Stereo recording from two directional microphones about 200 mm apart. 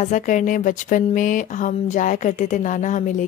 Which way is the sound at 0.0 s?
40° left (ahead or behind).